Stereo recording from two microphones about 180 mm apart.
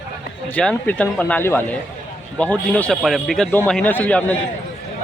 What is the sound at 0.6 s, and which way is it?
Speech, 5° left (ahead or behind).